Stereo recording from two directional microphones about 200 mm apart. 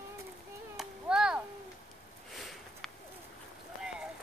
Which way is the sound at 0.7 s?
5° right (ahead or behind).